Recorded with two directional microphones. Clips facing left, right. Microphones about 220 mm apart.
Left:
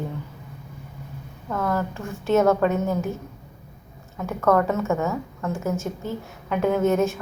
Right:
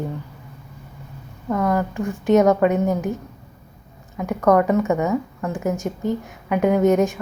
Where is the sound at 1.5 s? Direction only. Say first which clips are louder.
Right 5 dB; 15° right (ahead or behind).